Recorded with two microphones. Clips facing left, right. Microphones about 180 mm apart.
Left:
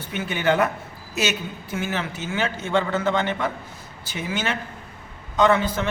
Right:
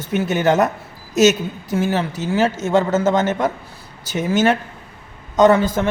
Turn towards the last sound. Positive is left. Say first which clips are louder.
# right 6 dB
turn(degrees=-45)  # may be behind; listen again after turning